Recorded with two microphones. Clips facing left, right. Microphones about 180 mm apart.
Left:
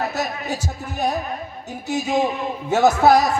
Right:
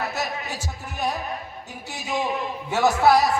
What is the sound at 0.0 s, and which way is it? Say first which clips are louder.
Heart sounds: left 4 dB; 35° left (ahead or behind).